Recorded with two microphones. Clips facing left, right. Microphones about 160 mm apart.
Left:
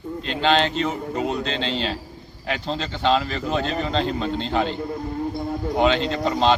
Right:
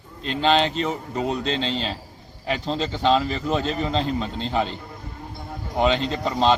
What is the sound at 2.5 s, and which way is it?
A man's voice, centre (ahead or behind).